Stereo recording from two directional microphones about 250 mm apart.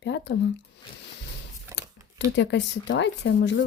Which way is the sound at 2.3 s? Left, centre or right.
Left.